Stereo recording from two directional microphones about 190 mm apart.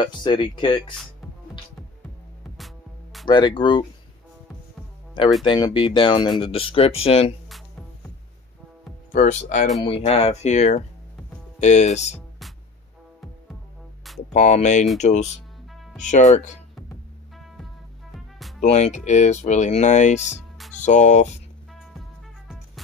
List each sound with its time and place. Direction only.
0.0 s speech: 25° left (ahead or behind)
2.5 s music: centre (ahead or behind)
3.3 s speech: 25° left (ahead or behind)
5.4 s speech: 25° left (ahead or behind)
9.1 s speech: 40° left (ahead or behind)
14.3 s speech: 35° left (ahead or behind)
18.6 s speech: 35° left (ahead or behind)
20.2 s music: centre (ahead or behind)
20.8 s speech: 40° left (ahead or behind)